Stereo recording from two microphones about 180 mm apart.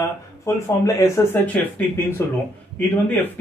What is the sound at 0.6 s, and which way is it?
Speech, 20° left (ahead or behind).